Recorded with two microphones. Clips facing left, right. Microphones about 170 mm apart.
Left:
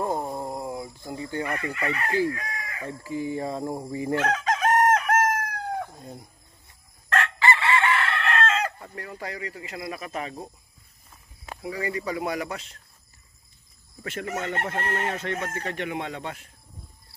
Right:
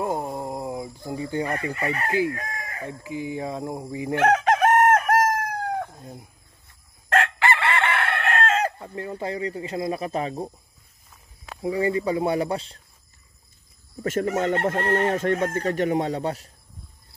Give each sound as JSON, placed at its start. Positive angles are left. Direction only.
{"t": 0.0, "sound": "a sound", "side_deg": -10}
{"t": 1.4, "sound": "speech", "side_deg": -35}
{"t": 2.3, "sound": "chicken", "side_deg": -40}
{"t": 2.9, "sound": "speech", "side_deg": -5}
{"t": 4.1, "sound": "chicken", "side_deg": -65}
{"t": 5.9, "sound": "speech", "side_deg": 0}
{"t": 7.1, "sound": "chicken", "side_deg": -50}
{"t": 8.7, "sound": "speech", "side_deg": -20}
{"t": 11.6, "sound": "speech", "side_deg": -25}
{"t": 14.0, "sound": "chicken", "side_deg": -45}